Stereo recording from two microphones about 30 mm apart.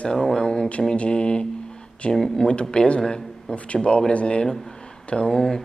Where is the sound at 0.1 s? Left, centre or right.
Left.